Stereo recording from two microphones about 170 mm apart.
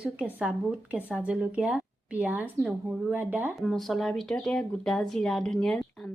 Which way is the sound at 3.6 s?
Centre (ahead or behind).